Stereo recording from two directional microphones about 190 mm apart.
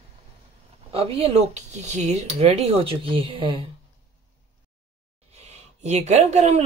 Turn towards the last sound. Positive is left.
turn(degrees=-35)  # may be behind; listen again after turning